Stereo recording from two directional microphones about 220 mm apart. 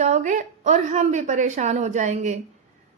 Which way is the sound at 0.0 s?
35° right (ahead or behind).